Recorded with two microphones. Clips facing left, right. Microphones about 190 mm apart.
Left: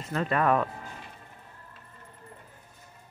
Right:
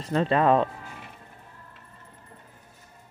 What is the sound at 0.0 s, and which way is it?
Speech, 30° right (ahead or behind).